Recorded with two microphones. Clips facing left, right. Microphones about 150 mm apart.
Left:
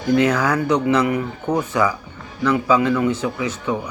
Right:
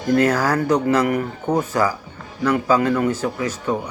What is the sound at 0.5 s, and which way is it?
A man's voice, 45° right (ahead or behind).